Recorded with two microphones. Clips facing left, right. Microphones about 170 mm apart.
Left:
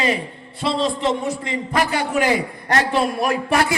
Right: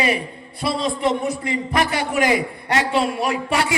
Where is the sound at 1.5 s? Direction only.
15° right (ahead or behind).